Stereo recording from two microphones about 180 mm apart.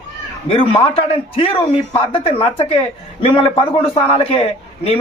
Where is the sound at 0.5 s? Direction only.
30° left (ahead or behind).